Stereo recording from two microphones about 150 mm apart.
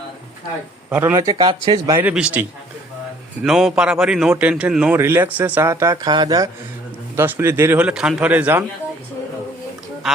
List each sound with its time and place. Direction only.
0.9 s speech: 10° right (ahead or behind)
1.1 s speech: 25° right (ahead or behind)
2.0 s a man's voice: 10° right (ahead or behind); by 6.5 s 25° right (ahead or behind)
7.2 s a man's voice: 15° right (ahead or behind)